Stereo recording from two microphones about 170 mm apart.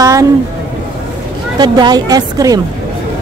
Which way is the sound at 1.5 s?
25° right (ahead or behind).